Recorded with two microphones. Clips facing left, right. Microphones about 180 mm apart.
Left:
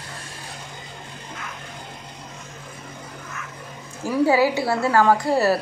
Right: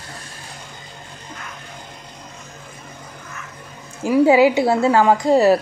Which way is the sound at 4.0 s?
20° right (ahead or behind).